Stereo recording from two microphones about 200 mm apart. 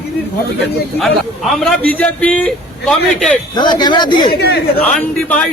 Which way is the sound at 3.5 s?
20° left (ahead or behind).